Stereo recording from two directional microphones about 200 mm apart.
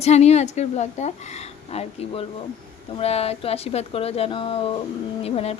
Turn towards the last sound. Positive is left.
turn(degrees=30)  # may be behind; listen again after turning